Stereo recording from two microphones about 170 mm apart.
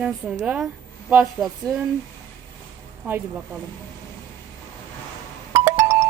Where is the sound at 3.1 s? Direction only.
10° right (ahead or behind).